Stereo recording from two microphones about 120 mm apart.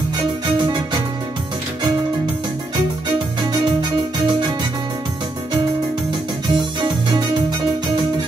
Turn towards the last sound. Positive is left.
turn(degrees=-40)  # may be behind; listen again after turning